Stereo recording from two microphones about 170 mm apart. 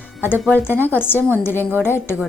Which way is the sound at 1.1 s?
15° right (ahead or behind).